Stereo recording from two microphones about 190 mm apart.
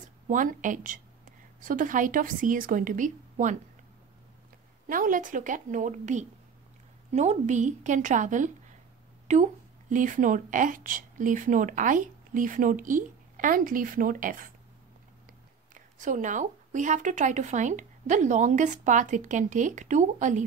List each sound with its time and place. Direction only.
0.3 s a woman's voice: 45° right (ahead or behind)
4.8 s speech: 45° right (ahead or behind)
15.7 s speech: 40° right (ahead or behind)